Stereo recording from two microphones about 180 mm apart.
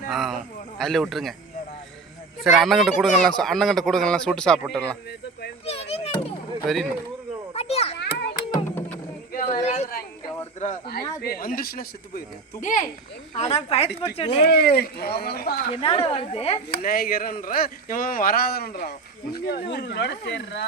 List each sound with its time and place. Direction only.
0.1 s a man's voice: centre (ahead or behind)
2.4 s a man's voice: centre (ahead or behind)
5.6 s children playing: 35° left (ahead or behind)
6.6 s a man's voice: centre (ahead or behind)
7.5 s a sound: 35° left (ahead or behind)
7.9 s children playing: 70° left (ahead or behind)
8.3 s music: 20° left (ahead or behind)
9.3 s a sound: 40° left (ahead or behind)
10.6 s a woman's voice: 50° left (ahead or behind); by 14.4 s 35° left (ahead or behind)
14.4 s speech: 60° left (ahead or behind)
15.7 s a woman's voice: 30° left (ahead or behind)
16.7 s speech: 55° left (ahead or behind)
19.7 s speech: 70° left (ahead or behind)